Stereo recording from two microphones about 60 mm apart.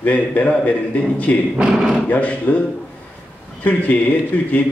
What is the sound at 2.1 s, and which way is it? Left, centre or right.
Speech, left.